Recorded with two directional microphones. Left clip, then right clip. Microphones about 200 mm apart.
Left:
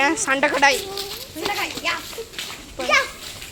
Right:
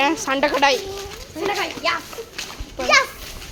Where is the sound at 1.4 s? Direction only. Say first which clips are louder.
Right 2 dB; 25° right (ahead or behind).